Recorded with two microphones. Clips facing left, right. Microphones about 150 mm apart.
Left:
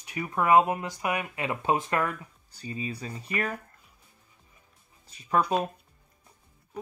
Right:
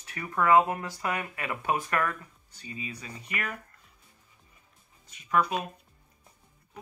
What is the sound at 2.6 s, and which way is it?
Speech, 35° left (ahead or behind).